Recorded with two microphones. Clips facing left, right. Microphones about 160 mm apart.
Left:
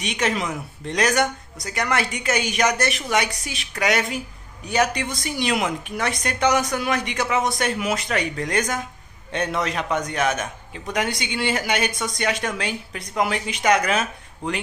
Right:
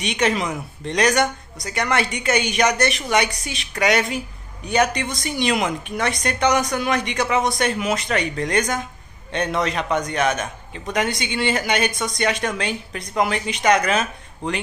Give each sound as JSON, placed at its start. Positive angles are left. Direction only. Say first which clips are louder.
{"t": 0.0, "sound": "a woman's voice", "louder": "right 3 dB", "side_deg": 5}